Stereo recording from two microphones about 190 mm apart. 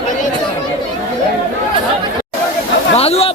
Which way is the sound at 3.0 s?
30° left (ahead or behind).